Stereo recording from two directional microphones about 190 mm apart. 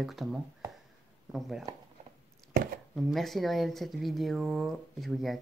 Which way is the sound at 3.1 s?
Centre (ahead or behind).